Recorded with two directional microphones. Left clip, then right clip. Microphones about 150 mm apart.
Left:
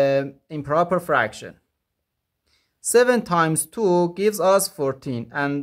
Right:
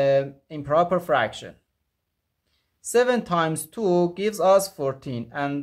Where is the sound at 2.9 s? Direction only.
35° left (ahead or behind).